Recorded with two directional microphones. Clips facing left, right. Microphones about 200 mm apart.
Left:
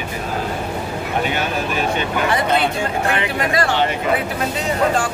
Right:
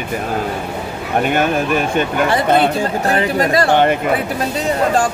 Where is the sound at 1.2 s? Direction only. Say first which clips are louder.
Right 7 dB; 50° right (ahead or behind).